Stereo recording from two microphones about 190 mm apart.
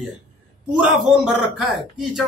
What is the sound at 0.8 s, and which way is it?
A man's voice, centre (ahead or behind).